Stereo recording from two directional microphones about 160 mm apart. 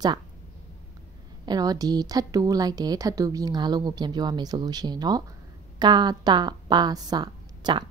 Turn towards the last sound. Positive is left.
turn(degrees=-25)  # may be behind; listen again after turning